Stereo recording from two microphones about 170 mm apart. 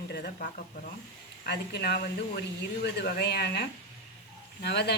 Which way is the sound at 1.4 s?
70° left (ahead or behind).